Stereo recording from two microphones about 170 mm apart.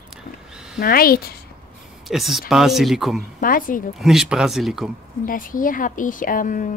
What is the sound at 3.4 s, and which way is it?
Speech, 55° left (ahead or behind).